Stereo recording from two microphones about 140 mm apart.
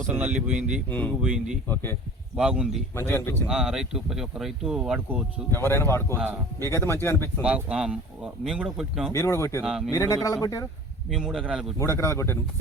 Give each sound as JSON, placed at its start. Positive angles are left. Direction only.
{"t": 0.1, "sound": "speech", "side_deg": -10}
{"t": 0.9, "sound": "speech", "side_deg": 10}
{"t": 1.2, "sound": "speech", "side_deg": -5}
{"t": 1.6, "sound": "speech", "side_deg": 15}
{"t": 2.3, "sound": "speech", "side_deg": -5}
{"t": 2.9, "sound": "speech", "side_deg": 15}
{"t": 3.4, "sound": "speech", "side_deg": -5}
{"t": 5.5, "sound": "speech", "side_deg": 15}
{"t": 7.4, "sound": "speech", "side_deg": -10}
{"t": 9.1, "sound": "speech", "side_deg": 20}
{"t": 9.6, "sound": "speech", "side_deg": -5}
{"t": 9.9, "sound": "speech", "side_deg": 25}
{"t": 11.1, "sound": "speech", "side_deg": -5}
{"t": 11.8, "sound": "speech", "side_deg": 20}